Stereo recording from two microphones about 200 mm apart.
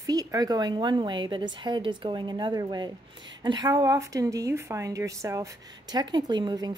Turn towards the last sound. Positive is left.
turn(degrees=-20)  # may be behind; listen again after turning